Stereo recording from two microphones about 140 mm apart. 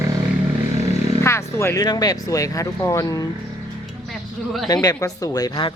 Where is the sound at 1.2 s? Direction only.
20° left (ahead or behind).